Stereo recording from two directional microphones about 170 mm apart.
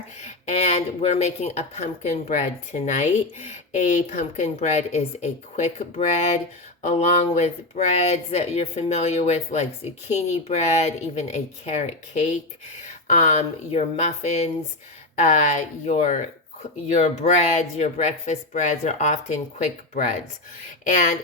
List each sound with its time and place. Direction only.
0.2 s speech: 40° left (ahead or behind)